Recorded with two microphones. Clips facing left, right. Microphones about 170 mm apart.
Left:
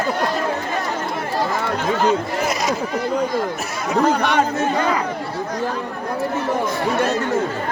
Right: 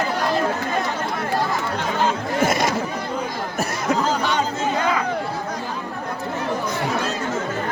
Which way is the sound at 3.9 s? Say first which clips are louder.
Left 5 dB; 60° left (ahead or behind).